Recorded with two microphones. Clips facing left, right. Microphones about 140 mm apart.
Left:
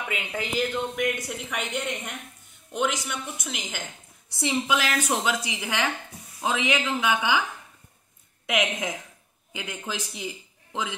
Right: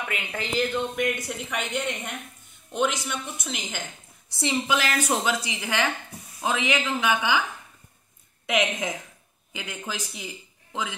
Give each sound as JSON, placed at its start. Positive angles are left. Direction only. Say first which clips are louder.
{"t": 0.1, "sound": "speech", "louder": "left 2 dB", "side_deg": 10}
{"t": 9.5, "sound": "speech", "louder": "left 1 dB", "side_deg": 20}